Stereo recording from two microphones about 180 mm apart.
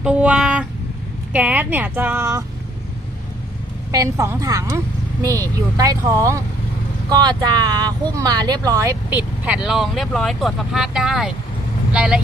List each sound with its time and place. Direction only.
0.0 s a sound: 5° right (ahead or behind)
1.3 s speech: 10° right (ahead or behind)
3.9 s speech: 15° right (ahead or behind)